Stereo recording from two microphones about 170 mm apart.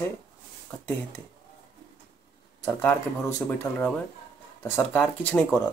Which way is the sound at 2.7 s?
10° left (ahead or behind).